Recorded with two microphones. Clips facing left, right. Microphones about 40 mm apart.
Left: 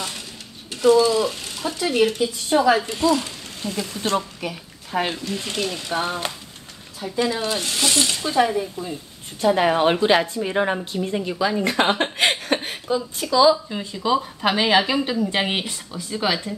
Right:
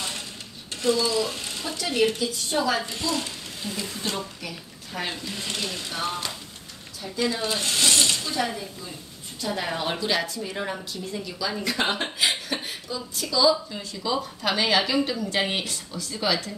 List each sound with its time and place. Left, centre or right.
0.8 s speech: centre
1.3 s a sound: centre
1.8 s speech: centre
2.5 s a woman's voice: left
2.9 s a woman's voice: centre
3.2 s speech: centre
4.4 s a sound: left
5.4 s speech: centre
5.9 s a woman's voice: left
7.4 s speech: centre
8.2 s a woman's voice: left